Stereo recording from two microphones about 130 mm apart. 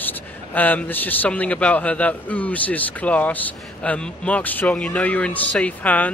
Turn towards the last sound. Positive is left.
turn(degrees=10)  # may be behind; listen again after turning